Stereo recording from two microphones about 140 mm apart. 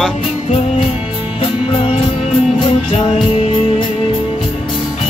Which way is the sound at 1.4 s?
45° left (ahead or behind).